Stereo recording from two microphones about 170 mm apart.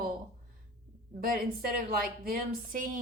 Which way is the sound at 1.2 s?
55° right (ahead or behind).